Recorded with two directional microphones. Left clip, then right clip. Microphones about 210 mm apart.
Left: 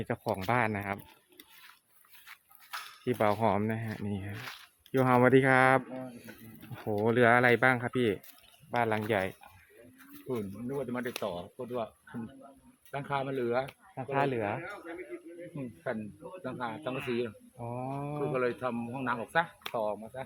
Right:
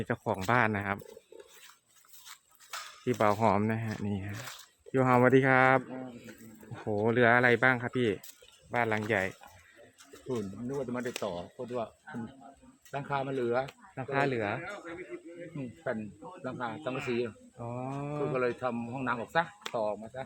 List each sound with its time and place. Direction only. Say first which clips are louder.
0.0 s speech: right 1 dB; 5° right (ahead or behind)
3.0 s speech: right 1 dB; 5° right (ahead or behind)
7.0 s speech: even; 5° left (ahead or behind)
12.9 s speech: even; centre (ahead or behind)
13.9 s speech: even; 10° left (ahead or behind)
14.6 s speech: right 1 dB; 40° right (ahead or behind)
15.5 s speech: right 1 dB; 5° right (ahead or behind)